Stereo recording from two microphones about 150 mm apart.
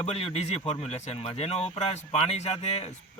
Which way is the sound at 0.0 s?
40° left (ahead or behind).